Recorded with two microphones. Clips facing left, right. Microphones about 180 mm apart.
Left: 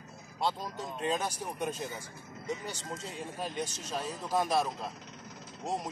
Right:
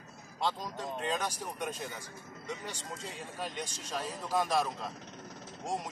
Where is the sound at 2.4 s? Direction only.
5° left (ahead or behind).